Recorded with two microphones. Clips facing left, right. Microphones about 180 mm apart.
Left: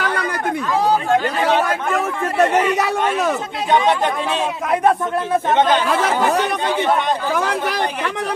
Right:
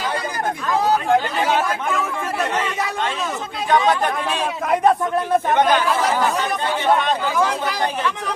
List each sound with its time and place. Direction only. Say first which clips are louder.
2.4 s speech: left 9 dB; 70° left (ahead or behind)
7.3 s speech: even; 65° left (ahead or behind)